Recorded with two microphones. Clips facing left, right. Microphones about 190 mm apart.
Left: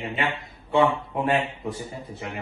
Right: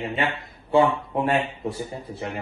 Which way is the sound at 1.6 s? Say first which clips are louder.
Right 2 dB; 30° right (ahead or behind).